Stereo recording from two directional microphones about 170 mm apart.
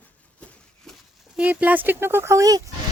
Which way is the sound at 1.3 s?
10° right (ahead or behind).